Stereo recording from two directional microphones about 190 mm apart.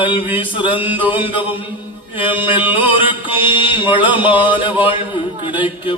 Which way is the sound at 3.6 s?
25° left (ahead or behind).